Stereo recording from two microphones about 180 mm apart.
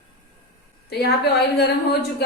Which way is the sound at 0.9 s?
65° left (ahead or behind).